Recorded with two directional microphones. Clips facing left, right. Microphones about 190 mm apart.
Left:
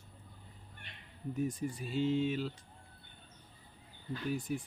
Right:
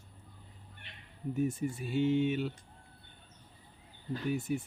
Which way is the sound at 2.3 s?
5° right (ahead or behind).